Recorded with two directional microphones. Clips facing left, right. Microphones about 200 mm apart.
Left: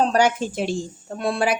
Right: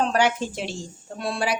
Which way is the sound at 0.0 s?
40° left (ahead or behind).